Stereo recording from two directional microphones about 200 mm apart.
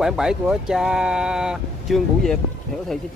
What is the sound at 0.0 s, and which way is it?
Speech, 5° right (ahead or behind).